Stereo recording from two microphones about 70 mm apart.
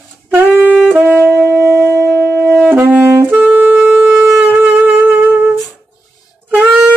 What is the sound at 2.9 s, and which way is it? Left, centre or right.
Saxophone, right.